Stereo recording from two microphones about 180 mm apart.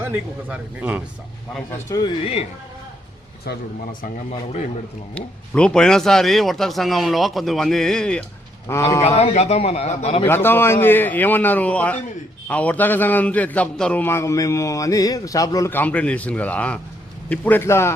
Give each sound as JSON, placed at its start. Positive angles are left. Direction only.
{"t": 0.0, "sound": "speech", "side_deg": -10}
{"t": 1.9, "sound": "speech", "side_deg": 20}
{"t": 5.1, "sound": "speech", "side_deg": 5}
{"t": 9.0, "sound": "a man's voice", "side_deg": 35}
{"t": 10.2, "sound": "a man's voice", "side_deg": 10}